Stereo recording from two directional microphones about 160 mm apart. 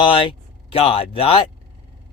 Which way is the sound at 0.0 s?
35° left (ahead or behind).